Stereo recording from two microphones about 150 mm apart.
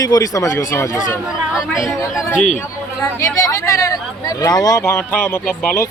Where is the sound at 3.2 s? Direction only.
20° left (ahead or behind).